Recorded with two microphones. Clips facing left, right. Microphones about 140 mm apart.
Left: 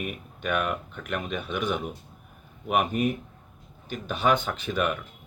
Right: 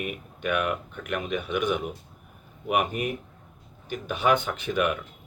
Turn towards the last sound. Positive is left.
turn(degrees=-15)  # may be behind; listen again after turning